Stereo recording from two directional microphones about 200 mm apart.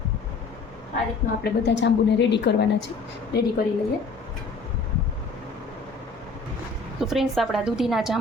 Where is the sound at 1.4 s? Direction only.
60° left (ahead or behind).